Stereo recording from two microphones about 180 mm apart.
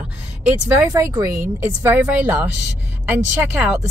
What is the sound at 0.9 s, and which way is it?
Speech, 25° right (ahead or behind).